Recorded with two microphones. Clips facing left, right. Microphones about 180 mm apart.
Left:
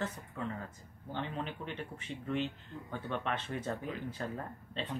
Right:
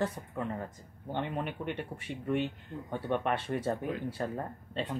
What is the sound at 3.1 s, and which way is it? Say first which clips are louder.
Speech: right 6 dB; 55° right (ahead or behind).